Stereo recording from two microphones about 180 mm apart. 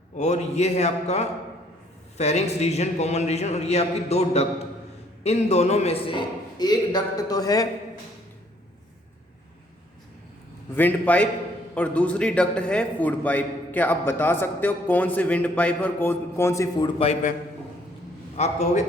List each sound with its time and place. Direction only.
0.2 s a man's voice: 40° left (ahead or behind); by 7.7 s 20° left (ahead or behind)
10.8 s a man's voice: 10° left (ahead or behind)
18.3 s a man's voice: 40° left (ahead or behind)